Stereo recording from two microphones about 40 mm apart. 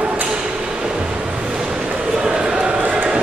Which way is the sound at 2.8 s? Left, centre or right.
Right.